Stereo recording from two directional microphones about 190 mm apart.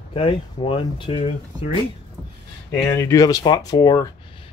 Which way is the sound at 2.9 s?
15° left (ahead or behind).